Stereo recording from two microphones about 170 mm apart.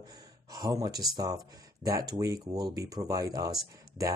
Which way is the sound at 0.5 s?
20° right (ahead or behind).